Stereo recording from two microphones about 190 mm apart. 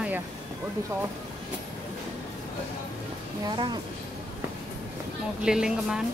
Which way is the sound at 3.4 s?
25° right (ahead or behind).